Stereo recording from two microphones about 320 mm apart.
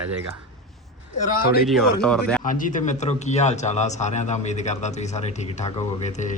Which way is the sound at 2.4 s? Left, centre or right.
Left.